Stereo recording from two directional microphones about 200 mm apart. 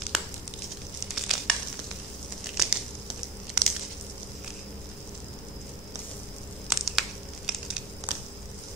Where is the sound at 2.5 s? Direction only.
Centre (ahead or behind).